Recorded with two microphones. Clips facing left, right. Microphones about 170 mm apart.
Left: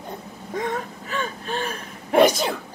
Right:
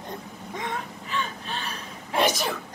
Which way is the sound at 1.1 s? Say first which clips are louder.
Left 4 dB; 50° left (ahead or behind).